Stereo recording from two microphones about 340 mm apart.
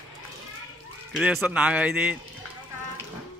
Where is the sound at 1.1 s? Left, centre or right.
Centre.